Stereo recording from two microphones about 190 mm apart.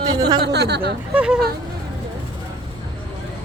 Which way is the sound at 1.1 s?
5° right (ahead or behind).